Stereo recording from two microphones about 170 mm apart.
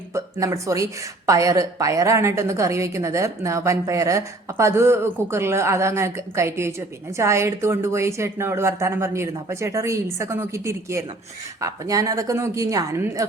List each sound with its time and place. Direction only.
0.1 s a woman's voice: 20° right (ahead or behind)